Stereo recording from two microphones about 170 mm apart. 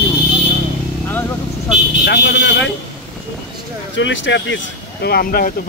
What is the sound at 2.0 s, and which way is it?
Speech, 70° left (ahead or behind).